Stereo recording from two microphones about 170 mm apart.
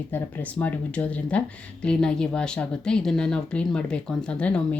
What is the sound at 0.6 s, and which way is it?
Speech, 10° left (ahead or behind).